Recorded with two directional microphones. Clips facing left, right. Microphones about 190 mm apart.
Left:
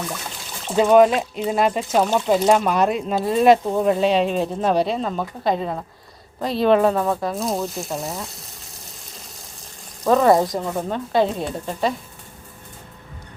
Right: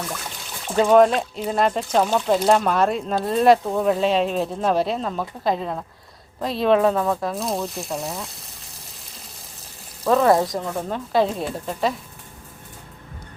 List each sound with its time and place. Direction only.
0.7 s speech: 5° left (ahead or behind)
10.0 s speech: centre (ahead or behind)